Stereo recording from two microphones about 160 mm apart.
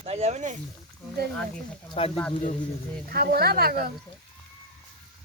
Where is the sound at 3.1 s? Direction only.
70° right (ahead or behind).